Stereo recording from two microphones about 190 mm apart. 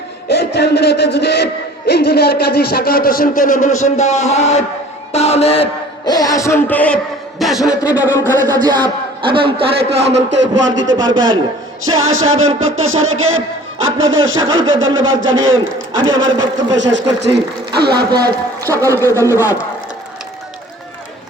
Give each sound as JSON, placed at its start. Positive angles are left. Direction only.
{"t": 0.3, "sound": "music", "side_deg": 60}
{"t": 1.9, "sound": "speech", "side_deg": 55}
{"t": 6.1, "sound": "a man's voice", "side_deg": 20}
{"t": 8.6, "sound": "a man's voice", "side_deg": -25}
{"t": 10.0, "sound": "speech", "side_deg": -65}
{"t": 11.8, "sound": "music", "side_deg": -90}
{"t": 16.1, "sound": "a man's voice", "side_deg": -20}
{"t": 16.7, "sound": "speech", "side_deg": -70}
{"t": 18.1, "sound": "speech", "side_deg": -20}